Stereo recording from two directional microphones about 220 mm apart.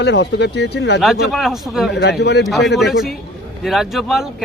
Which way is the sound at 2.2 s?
50° left (ahead or behind).